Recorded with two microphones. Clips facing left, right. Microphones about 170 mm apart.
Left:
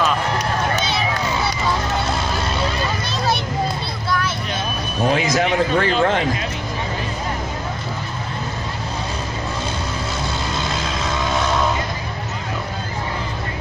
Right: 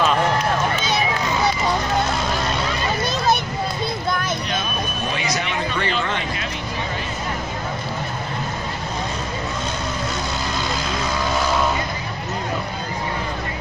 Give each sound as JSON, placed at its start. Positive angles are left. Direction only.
{"t": 5.4, "sound": "speech", "side_deg": 45}